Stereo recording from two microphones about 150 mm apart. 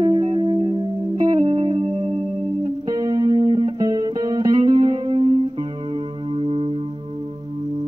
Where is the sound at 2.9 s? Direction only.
25° right (ahead or behind).